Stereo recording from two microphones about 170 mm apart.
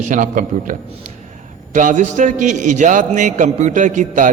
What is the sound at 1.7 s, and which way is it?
A man's voice, 50° right (ahead or behind).